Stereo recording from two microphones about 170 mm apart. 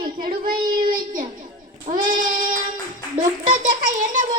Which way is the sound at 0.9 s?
55° right (ahead or behind).